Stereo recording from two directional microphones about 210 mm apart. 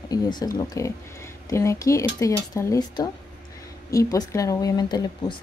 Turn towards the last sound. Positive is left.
turn(degrees=20)  # may be behind; listen again after turning